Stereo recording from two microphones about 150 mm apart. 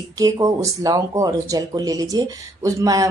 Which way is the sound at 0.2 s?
20° right (ahead or behind).